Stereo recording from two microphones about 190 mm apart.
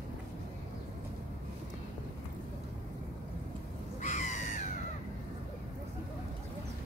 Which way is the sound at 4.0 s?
40° left (ahead or behind).